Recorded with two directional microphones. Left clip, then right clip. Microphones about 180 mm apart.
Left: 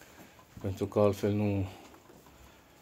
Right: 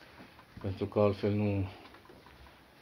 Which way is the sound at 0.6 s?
25° left (ahead or behind).